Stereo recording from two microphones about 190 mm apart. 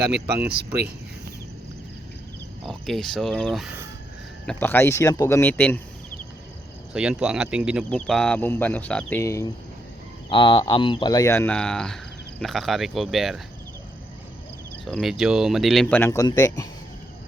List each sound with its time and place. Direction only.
2.6 s speech: centre (ahead or behind)
6.9 s speech: 5° right (ahead or behind); by 9.5 s 15° left (ahead or behind)
10.2 s speech: 25° left (ahead or behind); by 13.4 s centre (ahead or behind)
14.8 s speech: centre (ahead or behind); by 16.6 s 20° left (ahead or behind)